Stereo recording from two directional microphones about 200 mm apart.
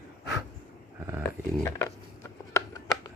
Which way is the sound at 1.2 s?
15° left (ahead or behind).